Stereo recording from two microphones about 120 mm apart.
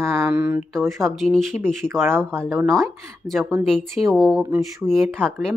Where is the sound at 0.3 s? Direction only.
10° right (ahead or behind).